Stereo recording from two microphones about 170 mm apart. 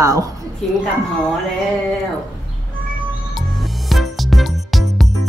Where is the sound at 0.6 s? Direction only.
5° left (ahead or behind).